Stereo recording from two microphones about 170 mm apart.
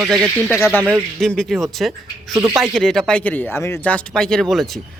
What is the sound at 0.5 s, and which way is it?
Speech, 15° left (ahead or behind).